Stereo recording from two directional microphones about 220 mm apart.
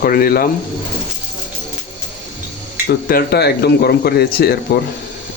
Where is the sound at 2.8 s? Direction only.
45° left (ahead or behind).